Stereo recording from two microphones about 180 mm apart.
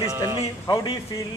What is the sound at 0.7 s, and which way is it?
Speech, 25° left (ahead or behind).